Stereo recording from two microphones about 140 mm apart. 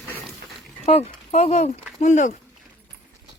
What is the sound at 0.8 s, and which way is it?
Speech, 50° left (ahead or behind).